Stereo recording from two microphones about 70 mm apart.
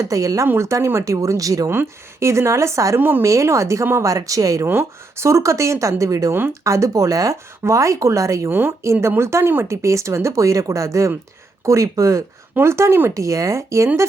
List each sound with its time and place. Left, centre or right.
0.0 s speech: right
0.4 s speech: right
0.9 s speech: right
1.7 s speech: right
3.0 s speech: right
3.2 s speech: right
4.6 s speech: right
8.4 s speech: right
9.6 s speech: right
12.5 s speech: right
13.1 s speech: right